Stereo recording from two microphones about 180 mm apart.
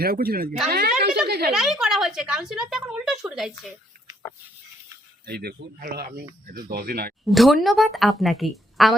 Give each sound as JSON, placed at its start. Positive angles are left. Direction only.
{"t": 0.0, "sound": "speech", "side_deg": -55}
{"t": 1.5, "sound": "a woman's voice", "side_deg": 0}
{"t": 5.2, "sound": "speech", "side_deg": -60}
{"t": 7.3, "sound": "a woman's voice", "side_deg": 0}